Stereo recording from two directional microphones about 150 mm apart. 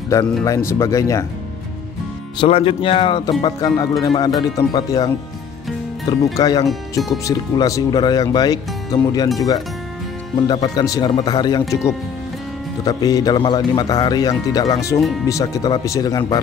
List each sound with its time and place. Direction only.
0.4 s speech: 20° left (ahead or behind)
2.3 s speech: 35° left (ahead or behind)
6.7 s speech: centre (ahead or behind)
7.2 s speech: 20° left (ahead or behind)
10.3 s speech: 30° left (ahead or behind)
12.8 s speech: 25° left (ahead or behind)
15.0 s speech: centre (ahead or behind)
15.2 s speech: 20° left (ahead or behind)